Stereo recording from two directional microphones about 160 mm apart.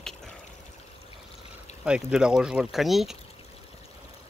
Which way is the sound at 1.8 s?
5° right (ahead or behind).